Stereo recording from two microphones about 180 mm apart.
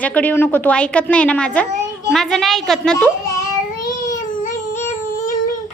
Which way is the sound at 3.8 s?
15° left (ahead or behind).